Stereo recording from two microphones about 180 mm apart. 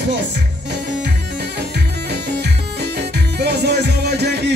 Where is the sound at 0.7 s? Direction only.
75° right (ahead or behind).